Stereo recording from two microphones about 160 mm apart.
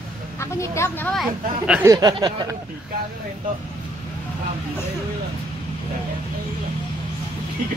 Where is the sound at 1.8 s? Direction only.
20° right (ahead or behind).